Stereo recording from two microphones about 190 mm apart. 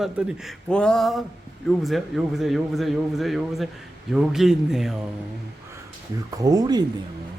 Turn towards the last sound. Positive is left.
turn(degrees=-20)  # may be behind; listen again after turning